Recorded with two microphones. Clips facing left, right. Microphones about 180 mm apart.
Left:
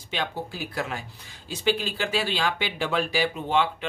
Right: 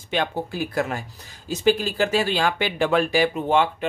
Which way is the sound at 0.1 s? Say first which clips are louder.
Right 6 dB; 50° right (ahead or behind).